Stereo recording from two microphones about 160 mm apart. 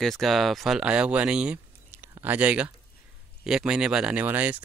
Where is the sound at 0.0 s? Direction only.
Centre (ahead or behind).